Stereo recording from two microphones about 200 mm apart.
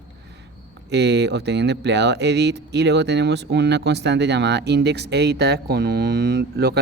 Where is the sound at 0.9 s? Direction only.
60° right (ahead or behind).